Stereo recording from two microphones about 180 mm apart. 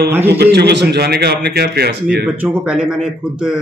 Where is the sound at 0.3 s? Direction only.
65° right (ahead or behind).